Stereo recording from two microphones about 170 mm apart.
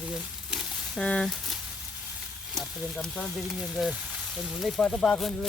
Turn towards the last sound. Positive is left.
turn(degrees=0)  # may be behind; listen again after turning